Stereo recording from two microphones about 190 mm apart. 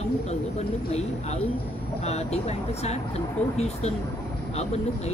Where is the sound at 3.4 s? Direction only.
5° left (ahead or behind).